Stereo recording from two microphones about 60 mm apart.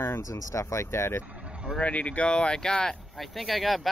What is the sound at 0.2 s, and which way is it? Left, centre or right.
Speech, left.